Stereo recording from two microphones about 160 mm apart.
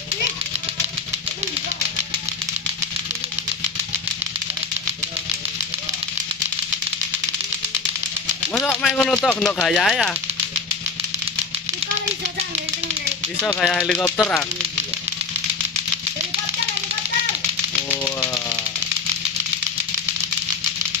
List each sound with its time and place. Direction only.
8.5 s speech: 10° left (ahead or behind)
13.4 s speech: 5° left (ahead or behind)
17.8 s music: 20° left (ahead or behind)